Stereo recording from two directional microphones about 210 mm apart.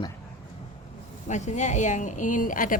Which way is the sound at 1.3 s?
35° left (ahead or behind).